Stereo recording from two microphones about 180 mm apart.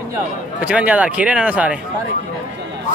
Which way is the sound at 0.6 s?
10° right (ahead or behind).